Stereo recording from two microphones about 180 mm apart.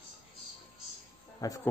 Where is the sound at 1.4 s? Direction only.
20° left (ahead or behind).